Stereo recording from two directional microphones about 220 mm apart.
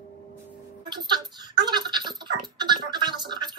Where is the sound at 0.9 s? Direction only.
20° right (ahead or behind).